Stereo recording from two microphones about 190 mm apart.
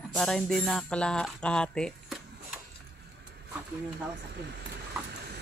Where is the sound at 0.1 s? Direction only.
Centre (ahead or behind).